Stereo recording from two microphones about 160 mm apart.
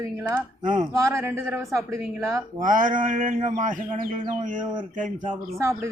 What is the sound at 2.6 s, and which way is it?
Speech, 55° right (ahead or behind).